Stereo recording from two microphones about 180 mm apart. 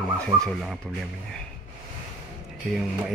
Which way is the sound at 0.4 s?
Centre (ahead or behind).